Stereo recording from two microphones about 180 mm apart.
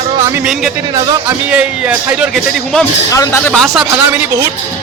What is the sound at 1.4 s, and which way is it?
A man's voice, 5° right (ahead or behind).